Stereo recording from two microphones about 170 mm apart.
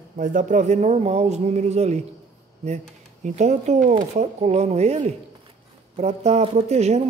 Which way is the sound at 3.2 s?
40° right (ahead or behind).